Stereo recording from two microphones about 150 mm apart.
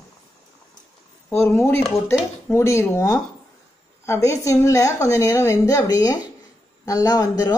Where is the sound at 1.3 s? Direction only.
15° left (ahead or behind).